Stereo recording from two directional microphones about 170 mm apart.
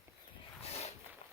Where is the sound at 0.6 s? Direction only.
35° left (ahead or behind).